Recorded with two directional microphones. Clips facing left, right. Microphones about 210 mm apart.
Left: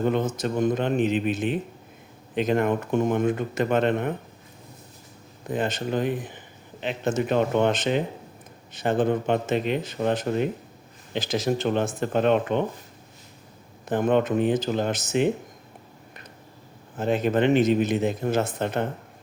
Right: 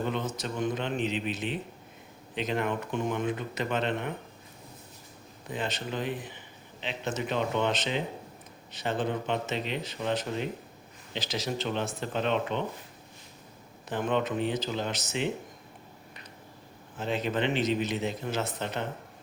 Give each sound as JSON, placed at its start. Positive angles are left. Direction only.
{"t": 0.0, "sound": "a man's voice", "side_deg": 45}
{"t": 5.5, "sound": "a man's voice", "side_deg": 50}
{"t": 13.8, "sound": "a man's voice", "side_deg": 50}
{"t": 17.0, "sound": "a man's voice", "side_deg": 50}